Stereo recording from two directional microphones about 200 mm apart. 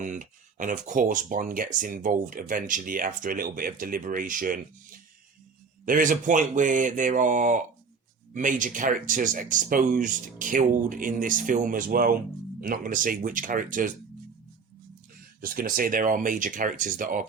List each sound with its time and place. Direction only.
0.0 s speech: 40° right (ahead or behind)
15.4 s speech: 45° right (ahead or behind)